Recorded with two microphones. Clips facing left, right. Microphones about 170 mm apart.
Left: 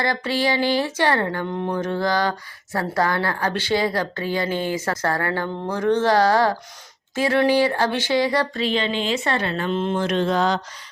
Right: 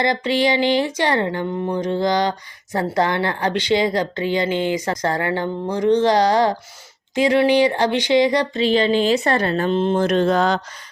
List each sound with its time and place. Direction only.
0.0 s speech: 20° right (ahead or behind)
8.6 s speech: 35° right (ahead or behind); by 10.6 s 50° right (ahead or behind)